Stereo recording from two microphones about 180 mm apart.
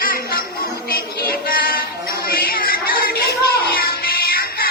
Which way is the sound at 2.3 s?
55° left (ahead or behind).